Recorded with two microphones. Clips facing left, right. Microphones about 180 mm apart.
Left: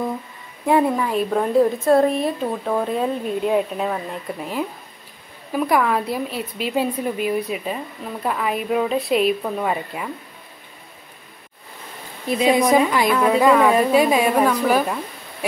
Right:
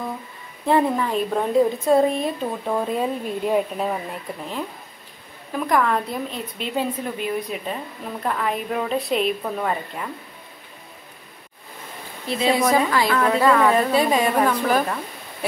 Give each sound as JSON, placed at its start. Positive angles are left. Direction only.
{"t": 0.7, "sound": "a woman's voice", "side_deg": 10}
{"t": 5.5, "sound": "a woman's voice", "side_deg": 10}
{"t": 12.4, "sound": "a woman's voice", "side_deg": 20}